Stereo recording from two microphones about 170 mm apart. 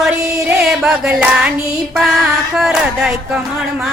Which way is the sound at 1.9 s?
5° right (ahead or behind).